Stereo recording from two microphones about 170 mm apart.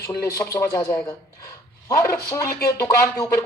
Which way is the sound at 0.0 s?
15° left (ahead or behind).